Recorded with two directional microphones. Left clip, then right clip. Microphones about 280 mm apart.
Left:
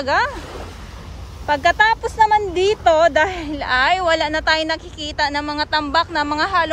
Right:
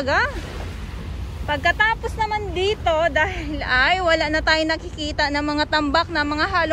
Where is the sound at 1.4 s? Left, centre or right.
Centre.